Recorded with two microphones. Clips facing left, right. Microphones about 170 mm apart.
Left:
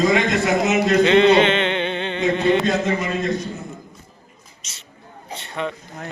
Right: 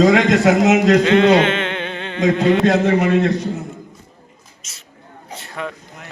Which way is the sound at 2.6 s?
70° right (ahead or behind).